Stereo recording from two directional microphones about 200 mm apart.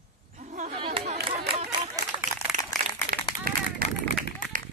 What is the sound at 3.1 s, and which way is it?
Run, 45° right (ahead or behind).